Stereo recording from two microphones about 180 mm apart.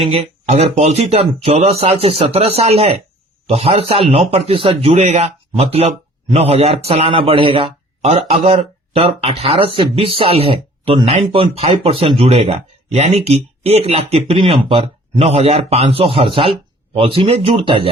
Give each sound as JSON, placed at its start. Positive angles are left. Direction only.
{"t": 0.0, "sound": "speech", "side_deg": -35}